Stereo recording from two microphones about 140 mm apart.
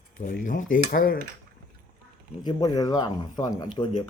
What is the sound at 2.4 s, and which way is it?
Speech, 25° left (ahead or behind).